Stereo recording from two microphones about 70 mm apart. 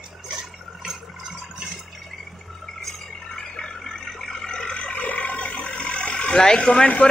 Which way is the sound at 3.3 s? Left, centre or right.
Centre.